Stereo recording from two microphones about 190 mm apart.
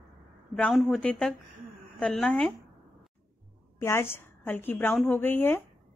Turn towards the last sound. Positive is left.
turn(degrees=10)  # may be behind; listen again after turning